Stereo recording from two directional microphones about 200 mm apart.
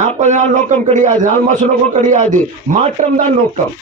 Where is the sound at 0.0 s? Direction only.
35° right (ahead or behind).